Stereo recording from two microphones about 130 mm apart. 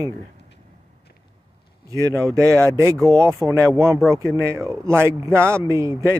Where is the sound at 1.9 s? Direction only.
25° right (ahead or behind).